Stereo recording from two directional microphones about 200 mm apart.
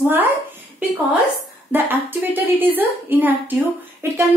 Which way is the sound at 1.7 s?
10° right (ahead or behind).